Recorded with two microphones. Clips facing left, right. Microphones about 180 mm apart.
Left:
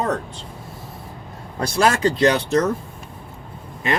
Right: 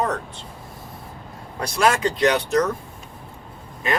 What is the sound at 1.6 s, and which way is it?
Speech, 35° left (ahead or behind).